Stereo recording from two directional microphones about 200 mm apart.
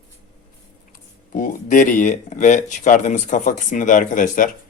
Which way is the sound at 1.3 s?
40° left (ahead or behind).